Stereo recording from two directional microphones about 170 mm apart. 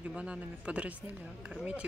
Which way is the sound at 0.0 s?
5° right (ahead or behind).